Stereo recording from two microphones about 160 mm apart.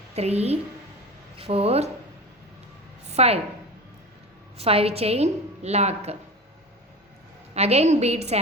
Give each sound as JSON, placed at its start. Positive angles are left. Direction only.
{"t": 0.2, "sound": "a woman's voice", "side_deg": -40}
{"t": 3.1, "sound": "a woman's voice", "side_deg": -40}
{"t": 4.5, "sound": "a woman's voice", "side_deg": -40}
{"t": 7.5, "sound": "a woman's voice", "side_deg": -40}